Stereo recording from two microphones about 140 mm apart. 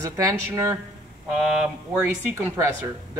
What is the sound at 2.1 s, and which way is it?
Speech, 20° right (ahead or behind).